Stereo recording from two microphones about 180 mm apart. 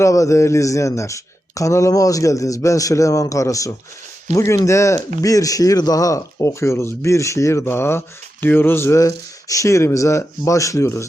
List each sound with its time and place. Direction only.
0.0 s speech: 15° left (ahead or behind)